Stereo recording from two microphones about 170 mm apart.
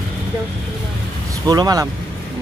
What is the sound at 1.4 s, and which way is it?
Speech, 20° right (ahead or behind).